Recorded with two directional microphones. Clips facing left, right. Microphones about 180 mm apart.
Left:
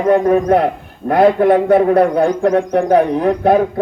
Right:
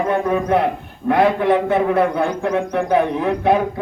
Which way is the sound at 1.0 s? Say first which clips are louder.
Left 4 dB; 45° left (ahead or behind).